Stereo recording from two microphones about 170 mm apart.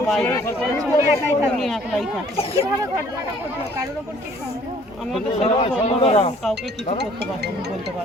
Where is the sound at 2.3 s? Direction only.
35° left (ahead or behind).